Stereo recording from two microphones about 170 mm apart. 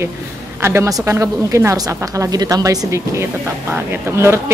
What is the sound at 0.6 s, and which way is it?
A woman's voice, 15° right (ahead or behind).